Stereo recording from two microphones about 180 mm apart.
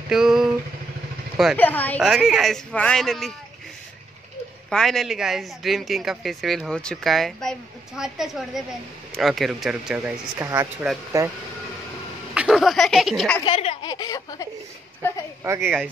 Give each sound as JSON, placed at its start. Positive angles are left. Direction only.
{"t": 0.1, "sound": "vehicle", "side_deg": 0}
{"t": 1.3, "sound": "speech", "side_deg": 0}
{"t": 1.6, "sound": "a woman's voice", "side_deg": 10}
{"t": 2.0, "sound": "a woman's voice", "side_deg": 0}
{"t": 4.6, "sound": "a woman's voice", "side_deg": 0}
{"t": 10.4, "sound": "speech", "side_deg": -15}
{"t": 12.4, "sound": "a woman's voice", "side_deg": 0}
{"t": 13.5, "sound": "speech", "side_deg": 30}
{"t": 13.9, "sound": "speech", "side_deg": 20}
{"t": 15.4, "sound": "speech", "side_deg": -15}